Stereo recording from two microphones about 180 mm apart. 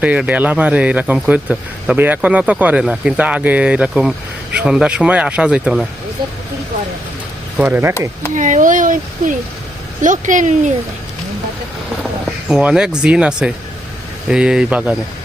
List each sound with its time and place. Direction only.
0.0 s speech: 5° right (ahead or behind)
7.6 s speech: 10° right (ahead or behind)
8.4 s speech: 45° right (ahead or behind)
12.5 s speech: 5° right (ahead or behind)